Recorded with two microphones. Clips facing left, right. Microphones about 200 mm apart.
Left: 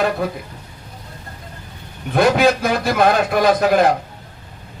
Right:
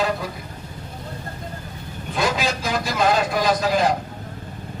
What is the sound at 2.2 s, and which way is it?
A man's voice, 60° left (ahead or behind).